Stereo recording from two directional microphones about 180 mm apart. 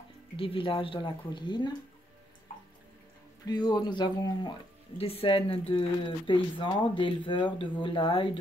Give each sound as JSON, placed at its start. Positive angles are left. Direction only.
{"t": 0.4, "sound": "speech", "side_deg": 30}
{"t": 3.4, "sound": "speech", "side_deg": 25}